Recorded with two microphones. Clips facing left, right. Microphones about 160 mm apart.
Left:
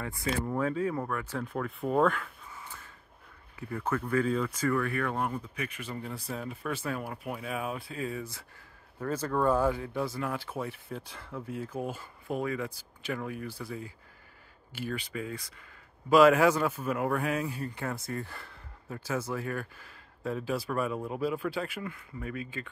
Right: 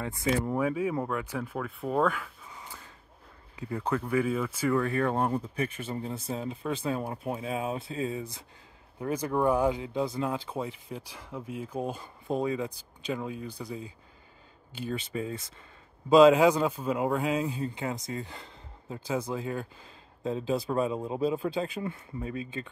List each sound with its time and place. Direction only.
0.0 s a man's voice: 20° right (ahead or behind)
0.5 s speech: 10° right (ahead or behind)
2.5 s a sound: 15° right (ahead or behind)
3.5 s speech: 15° right (ahead or behind)
4.7 s a man's voice: 25° right (ahead or behind)